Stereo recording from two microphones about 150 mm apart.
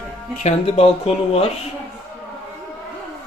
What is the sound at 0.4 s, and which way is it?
Speech, 45° left (ahead or behind).